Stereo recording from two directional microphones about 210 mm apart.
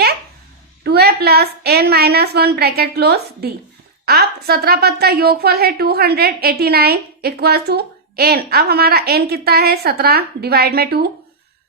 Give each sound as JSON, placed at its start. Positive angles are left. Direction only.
{"t": 0.9, "sound": "a woman's voice", "side_deg": -50}